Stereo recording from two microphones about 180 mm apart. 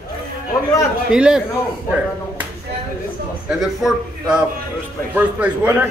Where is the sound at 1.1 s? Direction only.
5° right (ahead or behind).